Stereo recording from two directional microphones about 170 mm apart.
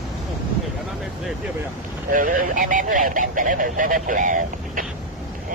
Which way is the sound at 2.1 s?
50° right (ahead or behind).